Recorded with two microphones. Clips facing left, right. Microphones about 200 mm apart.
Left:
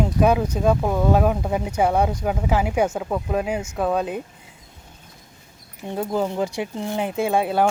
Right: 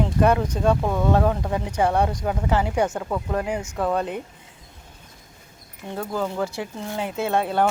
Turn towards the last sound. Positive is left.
turn(degrees=10)  # may be behind; listen again after turning